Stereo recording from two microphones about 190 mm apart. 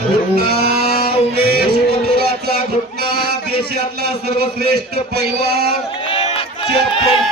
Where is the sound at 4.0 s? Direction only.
55° right (ahead or behind).